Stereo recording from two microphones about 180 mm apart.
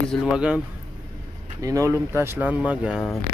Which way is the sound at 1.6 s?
15° right (ahead or behind).